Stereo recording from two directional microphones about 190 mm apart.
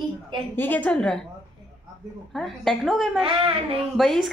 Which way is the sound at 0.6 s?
10° left (ahead or behind).